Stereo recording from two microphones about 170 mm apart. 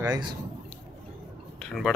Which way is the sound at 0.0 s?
20° right (ahead or behind).